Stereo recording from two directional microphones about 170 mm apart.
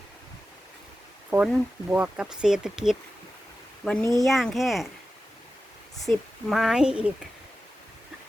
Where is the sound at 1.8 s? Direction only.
5° right (ahead or behind).